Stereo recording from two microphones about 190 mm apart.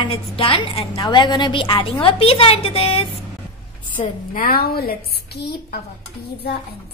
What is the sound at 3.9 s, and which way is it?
Speech, 45° left (ahead or behind).